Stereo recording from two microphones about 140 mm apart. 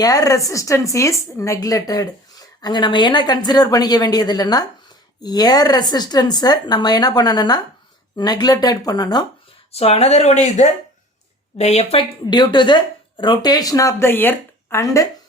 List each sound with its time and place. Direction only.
0.0 s speech: 25° left (ahead or behind)
9.7 s speech: 45° left (ahead or behind)
12.2 s speech: 30° left (ahead or behind)